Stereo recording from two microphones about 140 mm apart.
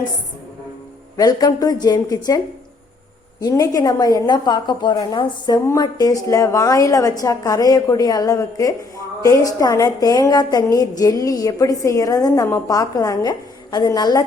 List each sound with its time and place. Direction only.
1.1 s a woman's voice: 25° left (ahead or behind)
3.4 s a woman's voice: 25° left (ahead or behind)